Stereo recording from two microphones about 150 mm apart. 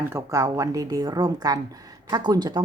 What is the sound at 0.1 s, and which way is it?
Speech, 20° right (ahead or behind).